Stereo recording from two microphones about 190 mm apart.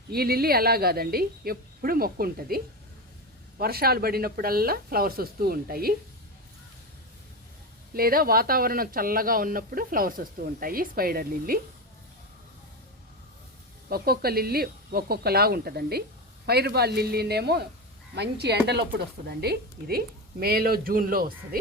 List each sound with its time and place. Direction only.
0.1 s a man's voice: 55° right (ahead or behind)
3.6 s a man's voice: 55° right (ahead or behind)
7.9 s a man's voice: 50° right (ahead or behind)
13.9 s a man's voice: 55° right (ahead or behind)